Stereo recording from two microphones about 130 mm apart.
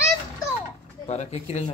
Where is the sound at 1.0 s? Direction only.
60° left (ahead or behind).